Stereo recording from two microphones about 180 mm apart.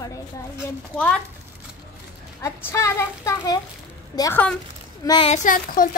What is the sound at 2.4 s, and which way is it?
A child's voice, 15° left (ahead or behind).